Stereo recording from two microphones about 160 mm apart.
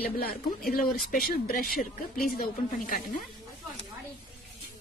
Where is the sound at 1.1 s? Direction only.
65° left (ahead or behind).